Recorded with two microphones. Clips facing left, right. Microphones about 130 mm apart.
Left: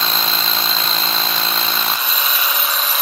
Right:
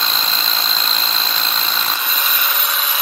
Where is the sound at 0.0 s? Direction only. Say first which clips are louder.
Left 2 dB; 5° left (ahead or behind).